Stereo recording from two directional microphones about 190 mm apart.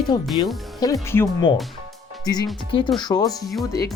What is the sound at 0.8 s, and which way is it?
Speech, 15° left (ahead or behind).